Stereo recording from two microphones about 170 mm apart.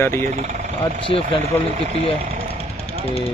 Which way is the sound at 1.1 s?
30° left (ahead or behind).